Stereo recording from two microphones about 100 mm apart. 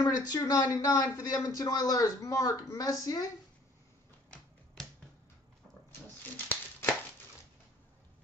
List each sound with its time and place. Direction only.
0.0 s speech: 40° left (ahead or behind)
4.8 s finger snapping: 5° left (ahead or behind)
5.9 s shuffling cards: 20° left (ahead or behind)